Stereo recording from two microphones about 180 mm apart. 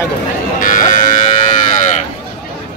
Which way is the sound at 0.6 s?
45° left (ahead or behind).